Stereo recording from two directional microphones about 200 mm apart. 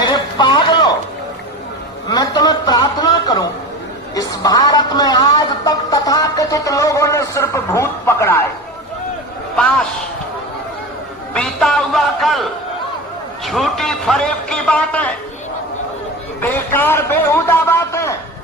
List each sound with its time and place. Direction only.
0.0 s a sound: 20° left (ahead or behind)
2.0 s a sound: 20° left (ahead or behind)
4.1 s a woman's voice: 20° left (ahead or behind)
9.6 s a man's voice: 5° left (ahead or behind)
11.3 s a man's voice: 5° left (ahead or behind)
16.4 s a man's voice: 10° left (ahead or behind)